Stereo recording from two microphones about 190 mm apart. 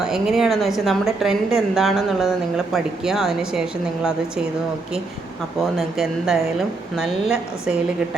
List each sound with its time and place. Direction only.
0.0 s a woman's voice: centre (ahead or behind)
5.5 s a woman's voice: centre (ahead or behind)